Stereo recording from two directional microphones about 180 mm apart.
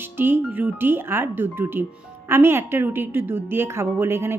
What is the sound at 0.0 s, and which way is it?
A woman's voice, 10° right (ahead or behind).